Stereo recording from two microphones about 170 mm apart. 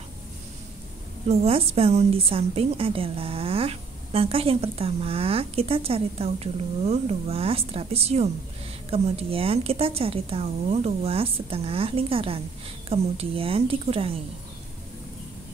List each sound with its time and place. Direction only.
1.3 s a woman's voice: 35° right (ahead or behind)